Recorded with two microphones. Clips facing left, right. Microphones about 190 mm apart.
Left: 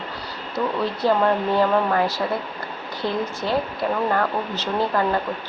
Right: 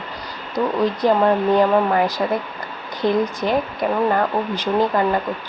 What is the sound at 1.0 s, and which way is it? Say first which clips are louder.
Speech: right 2 dB; 15° right (ahead or behind).